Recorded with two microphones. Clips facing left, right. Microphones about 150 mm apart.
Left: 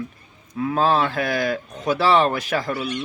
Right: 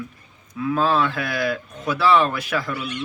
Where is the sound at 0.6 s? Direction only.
35° left (ahead or behind).